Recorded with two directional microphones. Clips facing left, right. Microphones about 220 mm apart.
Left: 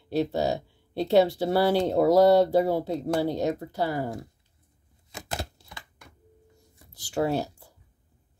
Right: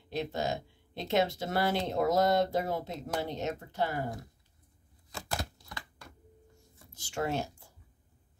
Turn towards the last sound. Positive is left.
turn(degrees=35)  # may be behind; listen again after turning